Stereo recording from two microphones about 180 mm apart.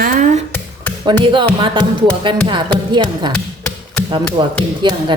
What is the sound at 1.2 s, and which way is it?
Speech, 25° right (ahead or behind).